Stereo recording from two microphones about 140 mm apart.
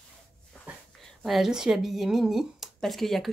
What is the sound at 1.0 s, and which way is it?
Speech, centre (ahead or behind).